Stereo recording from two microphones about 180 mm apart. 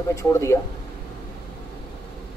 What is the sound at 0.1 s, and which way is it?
Speech, 15° left (ahead or behind).